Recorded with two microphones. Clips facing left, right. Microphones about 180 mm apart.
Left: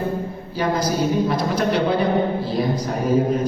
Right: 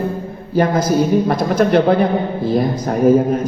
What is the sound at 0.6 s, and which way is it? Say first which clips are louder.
A man's voice: right 6 dB; 50° right (ahead or behind).